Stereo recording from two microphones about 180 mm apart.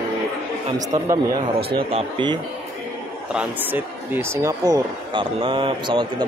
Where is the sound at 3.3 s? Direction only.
10° right (ahead or behind); by 6.2 s 25° right (ahead or behind).